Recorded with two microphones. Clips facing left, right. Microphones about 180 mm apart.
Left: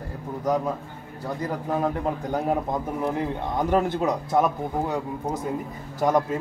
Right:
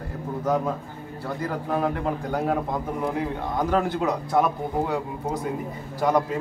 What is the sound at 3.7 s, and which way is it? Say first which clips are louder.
Speech: left 2 dB; 20° left (ahead or behind).